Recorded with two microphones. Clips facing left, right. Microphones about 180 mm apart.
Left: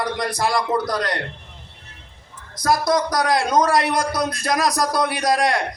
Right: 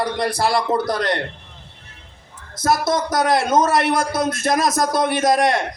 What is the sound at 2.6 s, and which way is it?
A man's voice, 25° right (ahead or behind).